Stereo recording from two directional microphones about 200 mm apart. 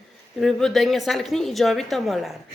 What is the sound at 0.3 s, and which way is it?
A woman's voice, centre (ahead or behind).